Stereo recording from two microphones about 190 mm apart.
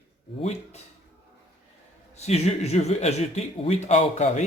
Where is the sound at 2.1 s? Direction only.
35° left (ahead or behind).